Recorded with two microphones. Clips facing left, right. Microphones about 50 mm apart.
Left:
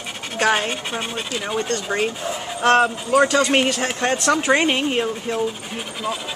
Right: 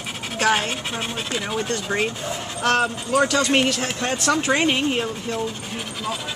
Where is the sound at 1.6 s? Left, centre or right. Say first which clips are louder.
Left 1 dB; centre.